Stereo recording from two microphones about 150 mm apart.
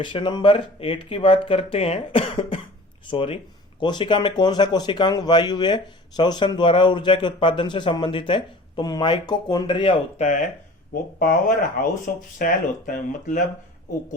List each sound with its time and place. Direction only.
0.0 s speech: 30° left (ahead or behind)
10.2 s speech: 55° left (ahead or behind)
11.8 s speech: 90° left
12.4 s speech: 65° left (ahead or behind)